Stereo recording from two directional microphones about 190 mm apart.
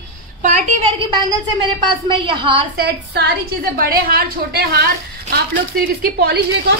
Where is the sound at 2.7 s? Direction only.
60° right (ahead or behind).